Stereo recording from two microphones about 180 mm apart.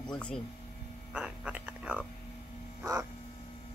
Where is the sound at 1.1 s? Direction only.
5° right (ahead or behind).